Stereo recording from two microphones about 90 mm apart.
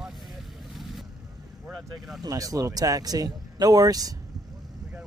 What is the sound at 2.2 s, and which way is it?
Speech, 40° right (ahead or behind).